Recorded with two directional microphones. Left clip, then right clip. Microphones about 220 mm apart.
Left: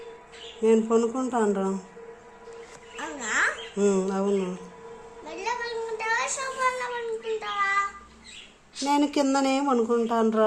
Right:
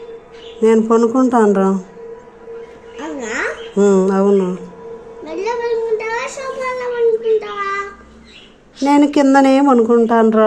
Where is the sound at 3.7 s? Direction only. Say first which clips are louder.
Right 17 dB; 15° right (ahead or behind).